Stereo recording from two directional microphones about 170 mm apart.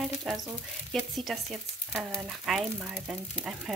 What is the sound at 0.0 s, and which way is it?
Speech, centre (ahead or behind).